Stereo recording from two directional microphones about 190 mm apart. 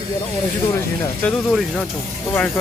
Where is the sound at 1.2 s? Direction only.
5° left (ahead or behind).